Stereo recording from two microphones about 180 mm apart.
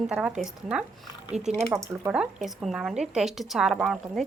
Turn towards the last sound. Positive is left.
turn(degrees=0)  # may be behind; listen again after turning